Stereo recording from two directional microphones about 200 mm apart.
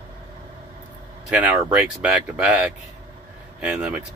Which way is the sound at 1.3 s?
5° right (ahead or behind).